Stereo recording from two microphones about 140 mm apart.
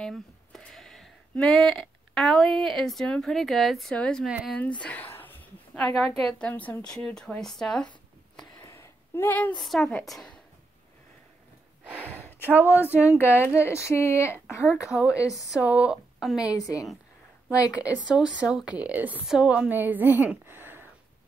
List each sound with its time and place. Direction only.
0.0 s speech: 5° left (ahead or behind)
4.3 s a woman's voice: 5° right (ahead or behind)
4.6 s a woman's voice: 10° left (ahead or behind)
8.5 s a sound: 20° left (ahead or behind)
9.6 s a woman's voice: centre (ahead or behind)
12.4 s a woman's voice: 15° right (ahead or behind)
13.2 s a woman's voice: 15° left (ahead or behind)
14.9 s a woman's voice: 5° right (ahead or behind)
16.3 s a woman's voice: 25° left (ahead or behind)
17.7 s a woman's voice: 10° right (ahead or behind)